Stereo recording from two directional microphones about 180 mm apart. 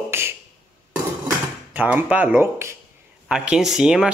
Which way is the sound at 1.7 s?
10° right (ahead or behind).